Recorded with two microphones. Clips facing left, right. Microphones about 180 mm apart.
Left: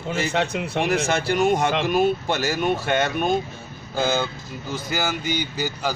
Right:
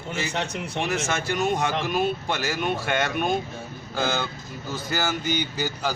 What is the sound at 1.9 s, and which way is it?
Speech, 45° left (ahead or behind).